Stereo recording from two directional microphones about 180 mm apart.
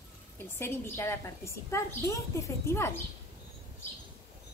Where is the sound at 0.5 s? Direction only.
15° left (ahead or behind).